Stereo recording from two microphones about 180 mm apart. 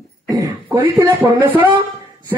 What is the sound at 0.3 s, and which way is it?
Throat clearing, 15° right (ahead or behind).